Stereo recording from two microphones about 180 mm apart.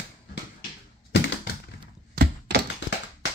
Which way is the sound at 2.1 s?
65° right (ahead or behind).